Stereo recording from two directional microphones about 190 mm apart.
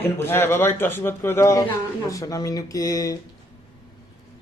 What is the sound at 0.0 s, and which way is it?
Speech, 10° left (ahead or behind).